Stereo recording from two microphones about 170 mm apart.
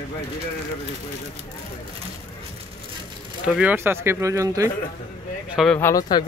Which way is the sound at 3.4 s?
5° right (ahead or behind).